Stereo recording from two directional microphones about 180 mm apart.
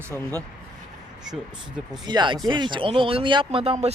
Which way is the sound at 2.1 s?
25° right (ahead or behind).